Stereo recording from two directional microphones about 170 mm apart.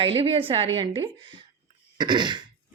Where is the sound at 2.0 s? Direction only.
25° right (ahead or behind).